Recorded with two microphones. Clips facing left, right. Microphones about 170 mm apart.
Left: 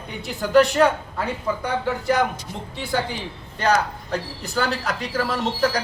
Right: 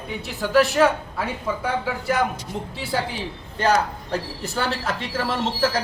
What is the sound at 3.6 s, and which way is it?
Speech, 30° right (ahead or behind).